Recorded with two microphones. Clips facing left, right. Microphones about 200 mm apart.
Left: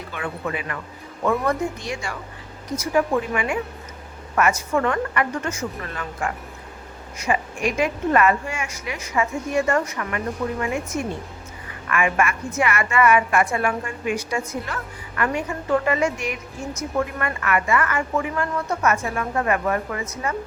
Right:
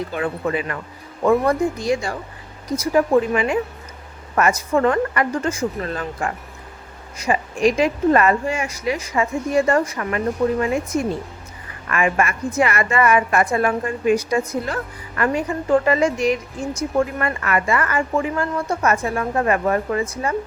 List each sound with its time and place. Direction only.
0.1 s a woman's voice: 35° right (ahead or behind)
11.9 s a woman's voice: 35° right (ahead or behind)